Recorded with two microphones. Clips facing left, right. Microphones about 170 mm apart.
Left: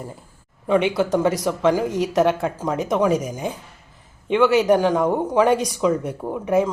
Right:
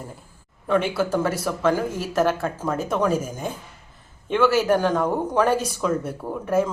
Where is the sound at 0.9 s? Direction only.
15° left (ahead or behind).